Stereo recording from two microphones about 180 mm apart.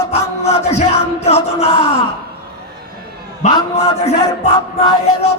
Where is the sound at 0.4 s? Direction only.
40° left (ahead or behind).